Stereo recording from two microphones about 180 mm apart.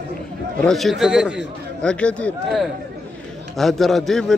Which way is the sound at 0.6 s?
Centre (ahead or behind).